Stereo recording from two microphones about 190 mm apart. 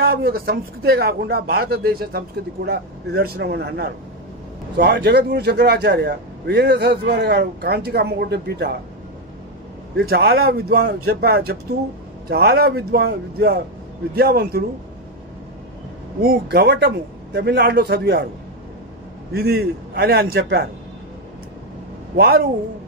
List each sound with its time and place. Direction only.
0.0 s a man's voice: 50° right (ahead or behind)
10.0 s a man's voice: 55° right (ahead or behind)
16.2 s a man's voice: 55° right (ahead or behind)
19.3 s a man's voice: 55° right (ahead or behind)
22.1 s a man's voice: 55° right (ahead or behind)